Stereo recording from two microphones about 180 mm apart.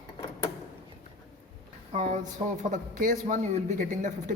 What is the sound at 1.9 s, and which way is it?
A woman's voice, 40° right (ahead or behind).